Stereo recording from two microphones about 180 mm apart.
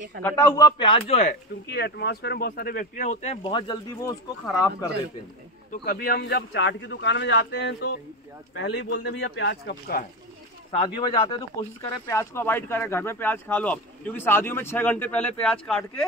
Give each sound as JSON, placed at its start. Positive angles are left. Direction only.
{"t": 0.2, "sound": "a man's voice", "side_deg": 15}
{"t": 1.1, "sound": "speech", "side_deg": 50}
{"t": 4.5, "sound": "speech", "side_deg": 0}
{"t": 5.7, "sound": "speech", "side_deg": 55}
{"t": 8.5, "sound": "speech", "side_deg": 80}
{"t": 10.7, "sound": "a man's voice", "side_deg": 25}
{"t": 12.1, "sound": "speech", "side_deg": 15}